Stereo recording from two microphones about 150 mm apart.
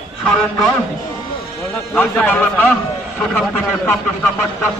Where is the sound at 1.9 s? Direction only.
10° left (ahead or behind).